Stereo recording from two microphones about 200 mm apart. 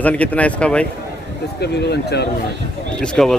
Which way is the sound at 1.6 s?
55° left (ahead or behind).